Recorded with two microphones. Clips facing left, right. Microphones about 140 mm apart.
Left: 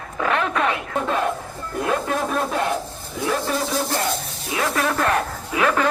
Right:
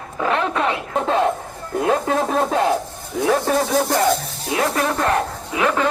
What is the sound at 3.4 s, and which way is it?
Speech, 50° right (ahead or behind).